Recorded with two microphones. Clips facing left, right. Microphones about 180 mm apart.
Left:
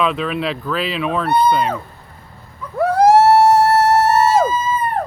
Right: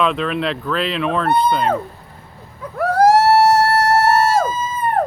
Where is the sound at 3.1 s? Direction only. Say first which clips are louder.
Left 3 dB; 20° left (ahead or behind).